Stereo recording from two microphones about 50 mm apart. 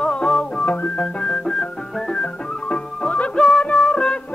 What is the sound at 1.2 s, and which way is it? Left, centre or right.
Music, centre.